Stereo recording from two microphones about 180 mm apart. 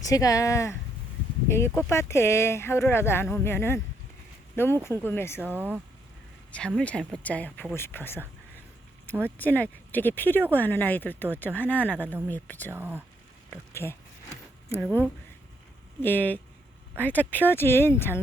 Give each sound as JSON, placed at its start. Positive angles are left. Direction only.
{"t": 0.0, "sound": "speech", "side_deg": 20}
{"t": 5.5, "sound": "speech", "side_deg": -10}
{"t": 6.5, "sound": "speech", "side_deg": 5}
{"t": 9.2, "sound": "speech", "side_deg": 10}
{"t": 12.7, "sound": "speech", "side_deg": -10}
{"t": 13.5, "sound": "speech", "side_deg": 15}